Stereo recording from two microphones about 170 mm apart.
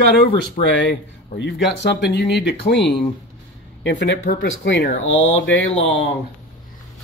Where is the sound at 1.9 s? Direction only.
85° left.